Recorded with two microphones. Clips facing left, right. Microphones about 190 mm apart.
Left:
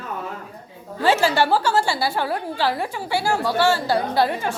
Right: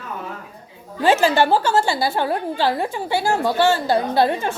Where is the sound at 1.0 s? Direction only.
15° right (ahead or behind).